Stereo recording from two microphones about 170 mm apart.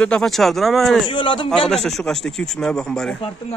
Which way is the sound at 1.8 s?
Centre (ahead or behind).